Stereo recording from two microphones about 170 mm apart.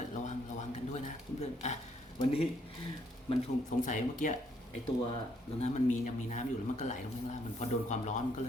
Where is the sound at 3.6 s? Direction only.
50° left (ahead or behind).